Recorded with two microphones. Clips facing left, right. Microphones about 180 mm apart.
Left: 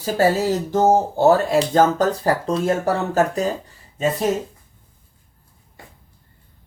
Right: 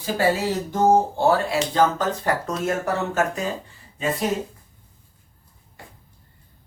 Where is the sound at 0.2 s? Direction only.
40° left (ahead or behind).